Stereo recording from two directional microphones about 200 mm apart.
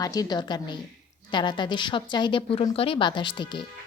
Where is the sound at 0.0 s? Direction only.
20° left (ahead or behind).